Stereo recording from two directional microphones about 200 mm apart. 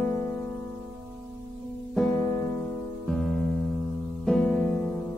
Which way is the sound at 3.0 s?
5° left (ahead or behind).